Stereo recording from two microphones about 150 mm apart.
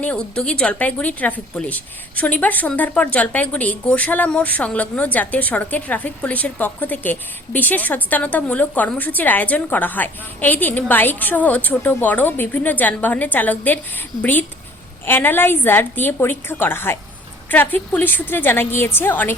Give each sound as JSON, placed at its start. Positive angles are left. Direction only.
{"t": 0.0, "sound": "a woman's voice", "side_deg": 10}